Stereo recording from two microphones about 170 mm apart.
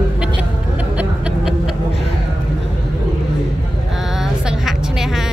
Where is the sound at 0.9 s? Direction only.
5° right (ahead or behind).